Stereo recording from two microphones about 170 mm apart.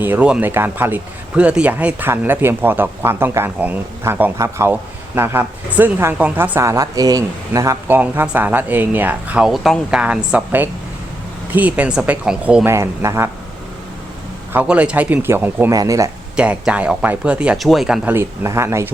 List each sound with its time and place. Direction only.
0.0 s speech: 10° right (ahead or behind)
12.6 s speech: 15° right (ahead or behind)
14.5 s speech: 10° right (ahead or behind)
16.3 s speech: 5° right (ahead or behind)